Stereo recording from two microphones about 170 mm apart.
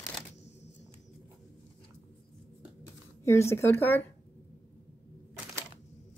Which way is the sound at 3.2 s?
15° left (ahead or behind).